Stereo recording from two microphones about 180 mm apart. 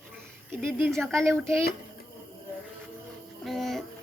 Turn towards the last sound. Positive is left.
turn(degrees=0)  # may be behind; listen again after turning